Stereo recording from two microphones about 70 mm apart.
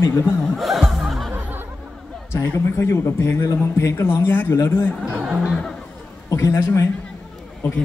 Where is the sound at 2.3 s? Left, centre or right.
Left.